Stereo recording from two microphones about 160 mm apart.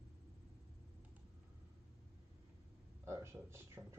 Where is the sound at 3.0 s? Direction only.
15° right (ahead or behind).